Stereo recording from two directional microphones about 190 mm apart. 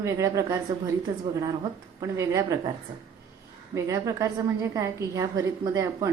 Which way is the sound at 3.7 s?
15° right (ahead or behind).